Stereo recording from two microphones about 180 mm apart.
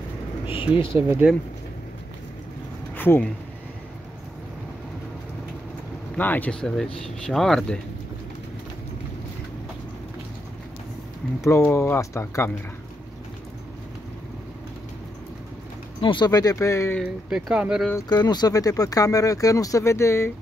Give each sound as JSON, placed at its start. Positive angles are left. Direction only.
{"t": 0.7, "sound": "speech", "side_deg": 30}
{"t": 1.0, "sound": "speech", "side_deg": -10}
{"t": 2.9, "sound": "a sound", "side_deg": 10}
{"t": 6.1, "sound": "speech", "side_deg": 10}
{"t": 11.4, "sound": "speech", "side_deg": 15}
{"t": 16.0, "sound": "speech", "side_deg": 25}
{"t": 17.0, "sound": "speech", "side_deg": -5}
{"t": 17.9, "sound": "speech", "side_deg": 25}